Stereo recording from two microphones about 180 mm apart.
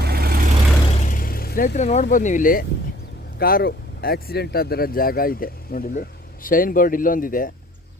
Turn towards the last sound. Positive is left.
turn(degrees=50)  # may be behind; listen again after turning